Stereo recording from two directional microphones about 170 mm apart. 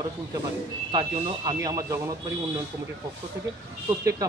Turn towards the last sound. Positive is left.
turn(degrees=-20)  # may be behind; listen again after turning